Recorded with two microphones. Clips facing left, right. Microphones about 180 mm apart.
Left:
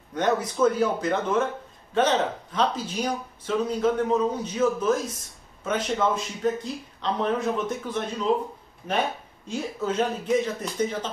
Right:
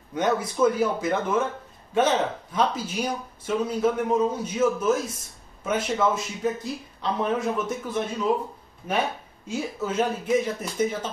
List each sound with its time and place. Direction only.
0.1 s speech: 10° right (ahead or behind)
9.5 s speech: 10° right (ahead or behind)